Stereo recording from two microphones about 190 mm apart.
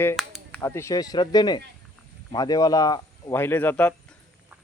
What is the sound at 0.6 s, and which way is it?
Speech, 15° left (ahead or behind).